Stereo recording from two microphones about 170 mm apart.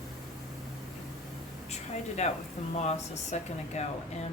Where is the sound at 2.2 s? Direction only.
40° left (ahead or behind).